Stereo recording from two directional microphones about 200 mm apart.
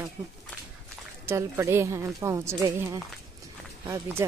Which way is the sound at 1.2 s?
15° right (ahead or behind).